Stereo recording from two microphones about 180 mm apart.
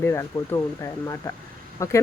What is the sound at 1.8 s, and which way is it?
Speech, 15° left (ahead or behind).